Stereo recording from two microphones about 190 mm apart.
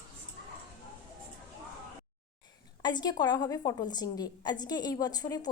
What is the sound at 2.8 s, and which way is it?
A woman's voice, 20° left (ahead or behind).